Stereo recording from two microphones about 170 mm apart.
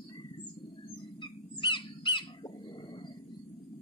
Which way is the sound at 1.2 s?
30° left (ahead or behind).